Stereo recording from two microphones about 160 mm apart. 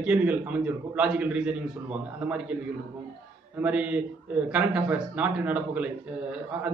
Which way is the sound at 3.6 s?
10° right (ahead or behind).